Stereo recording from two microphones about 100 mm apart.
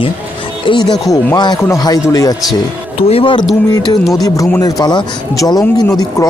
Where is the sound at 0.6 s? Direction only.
55° left (ahead or behind).